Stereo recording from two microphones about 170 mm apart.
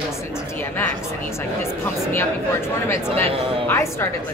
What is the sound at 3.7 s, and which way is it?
Speech, 15° left (ahead or behind).